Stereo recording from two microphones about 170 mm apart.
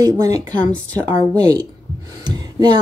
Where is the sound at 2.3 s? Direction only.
25° right (ahead or behind).